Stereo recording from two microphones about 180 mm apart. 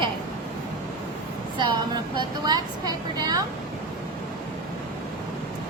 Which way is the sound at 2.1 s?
25° right (ahead or behind).